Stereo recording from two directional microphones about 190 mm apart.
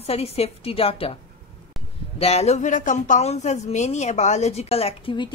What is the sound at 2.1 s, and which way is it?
Speech, 35° left (ahead or behind).